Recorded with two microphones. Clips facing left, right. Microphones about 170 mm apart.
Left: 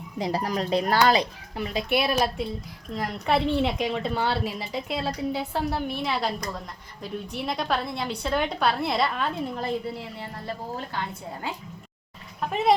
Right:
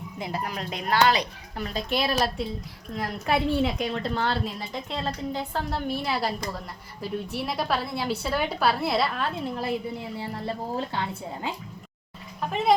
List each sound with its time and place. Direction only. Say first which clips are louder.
0.2 s speech: left 5 dB; 35° left (ahead or behind)
1.6 s a woman's voice: left 2 dB; 10° left (ahead or behind); by 9.7 s 5° right (ahead or behind)
10.4 s speech: right 3 dB; 25° right (ahead or behind)